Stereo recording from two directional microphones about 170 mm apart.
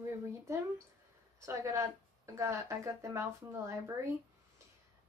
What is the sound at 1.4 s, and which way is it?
Speech, 15° right (ahead or behind).